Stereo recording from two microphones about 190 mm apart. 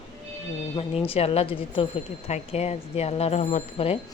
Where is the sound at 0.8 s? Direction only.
30° left (ahead or behind).